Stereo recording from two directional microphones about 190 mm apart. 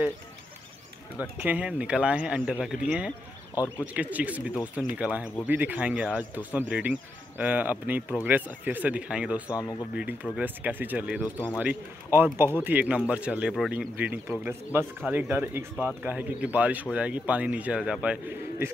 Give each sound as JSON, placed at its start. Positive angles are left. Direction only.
{"t": 1.4, "sound": "speech", "side_deg": -5}
{"t": 3.5, "sound": "speech", "side_deg": 10}
{"t": 3.8, "sound": "speech", "side_deg": -10}
{"t": 9.6, "sound": "speech", "side_deg": 20}
{"t": 10.4, "sound": "speech", "side_deg": -10}